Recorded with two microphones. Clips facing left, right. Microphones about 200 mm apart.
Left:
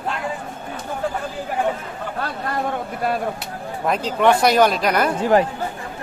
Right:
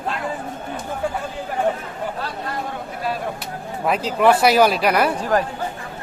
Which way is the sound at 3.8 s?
5° right (ahead or behind).